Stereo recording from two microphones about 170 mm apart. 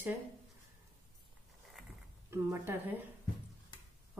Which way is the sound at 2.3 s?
15° right (ahead or behind).